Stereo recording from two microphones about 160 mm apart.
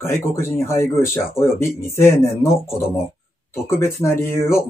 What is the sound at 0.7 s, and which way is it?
Speech, 15° left (ahead or behind).